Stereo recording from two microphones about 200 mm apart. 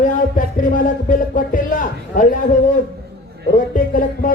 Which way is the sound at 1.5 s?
40° left (ahead or behind).